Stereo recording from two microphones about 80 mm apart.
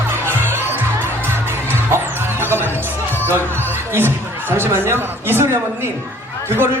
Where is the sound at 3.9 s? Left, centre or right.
Right.